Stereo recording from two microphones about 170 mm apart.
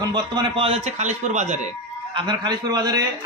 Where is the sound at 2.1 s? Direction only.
25° right (ahead or behind).